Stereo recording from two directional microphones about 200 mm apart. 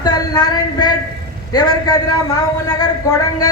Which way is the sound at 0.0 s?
20° left (ahead or behind).